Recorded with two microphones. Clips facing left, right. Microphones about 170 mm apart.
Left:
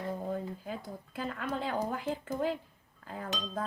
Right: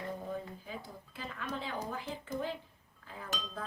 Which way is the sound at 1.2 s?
50° left (ahead or behind).